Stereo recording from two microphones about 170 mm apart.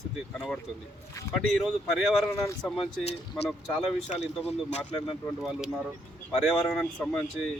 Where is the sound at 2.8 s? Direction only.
30° left (ahead or behind).